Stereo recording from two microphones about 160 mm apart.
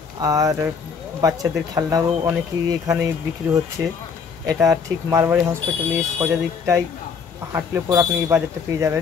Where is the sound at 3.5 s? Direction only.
20° right (ahead or behind).